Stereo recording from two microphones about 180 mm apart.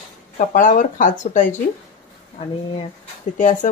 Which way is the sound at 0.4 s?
45° left (ahead or behind).